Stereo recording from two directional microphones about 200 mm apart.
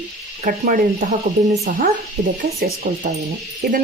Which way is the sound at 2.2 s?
55° right (ahead or behind).